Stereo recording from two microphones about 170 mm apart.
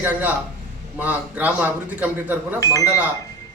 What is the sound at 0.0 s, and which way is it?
A man's voice, 10° right (ahead or behind).